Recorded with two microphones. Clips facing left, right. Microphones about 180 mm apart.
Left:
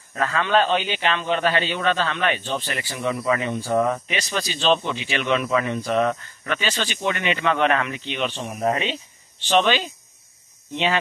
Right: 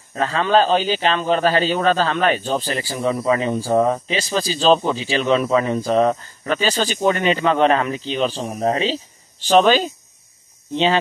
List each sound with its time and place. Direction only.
0.1 s a man's voice: 30° right (ahead or behind)